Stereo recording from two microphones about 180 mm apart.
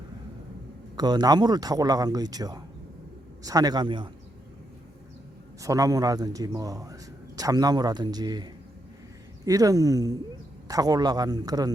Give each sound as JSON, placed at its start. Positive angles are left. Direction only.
{"t": 0.9, "sound": "a man's voice", "side_deg": -25}
{"t": 5.6, "sound": "a man's voice", "side_deg": -20}
{"t": 9.5, "sound": "a man's voice", "side_deg": -20}